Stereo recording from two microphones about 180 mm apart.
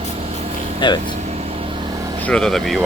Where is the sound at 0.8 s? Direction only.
25° left (ahead or behind).